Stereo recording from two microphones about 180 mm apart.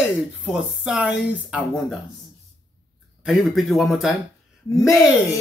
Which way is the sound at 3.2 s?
Centre (ahead or behind).